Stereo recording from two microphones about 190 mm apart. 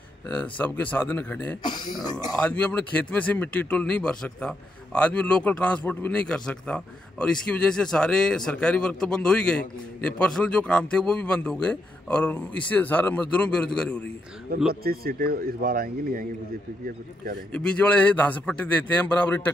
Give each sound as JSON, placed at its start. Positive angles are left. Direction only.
{"t": 0.3, "sound": "speech", "side_deg": 5}
{"t": 1.6, "sound": "speech", "side_deg": 20}
{"t": 2.3, "sound": "a man's voice", "side_deg": 10}
{"t": 14.7, "sound": "a man's voice", "side_deg": -50}
{"t": 17.5, "sound": "speech", "side_deg": 5}